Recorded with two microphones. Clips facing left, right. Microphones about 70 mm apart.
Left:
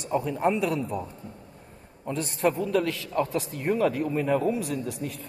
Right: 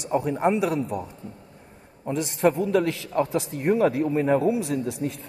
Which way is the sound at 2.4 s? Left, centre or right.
Right.